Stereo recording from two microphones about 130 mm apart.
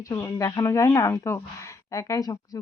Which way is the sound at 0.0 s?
25° left (ahead or behind).